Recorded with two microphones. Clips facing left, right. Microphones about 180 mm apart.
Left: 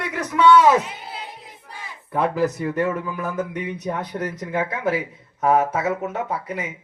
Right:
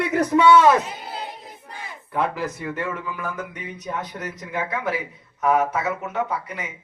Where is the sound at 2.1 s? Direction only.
40° left (ahead or behind).